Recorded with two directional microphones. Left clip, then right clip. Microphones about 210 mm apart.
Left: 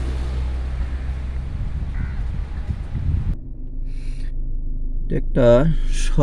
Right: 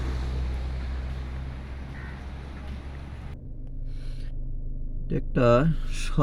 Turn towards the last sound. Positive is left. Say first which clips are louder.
# left 4 dB
turn(degrees=0)  # may be behind; listen again after turning